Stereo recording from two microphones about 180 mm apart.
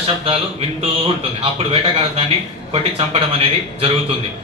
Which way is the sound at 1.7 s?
35° right (ahead or behind).